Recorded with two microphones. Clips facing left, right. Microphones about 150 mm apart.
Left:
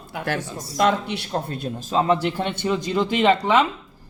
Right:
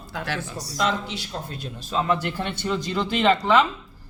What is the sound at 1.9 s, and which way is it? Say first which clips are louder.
Speech: left 4 dB; 30° left (ahead or behind).